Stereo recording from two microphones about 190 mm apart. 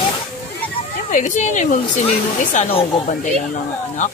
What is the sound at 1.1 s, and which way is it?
Speech, 40° left (ahead or behind).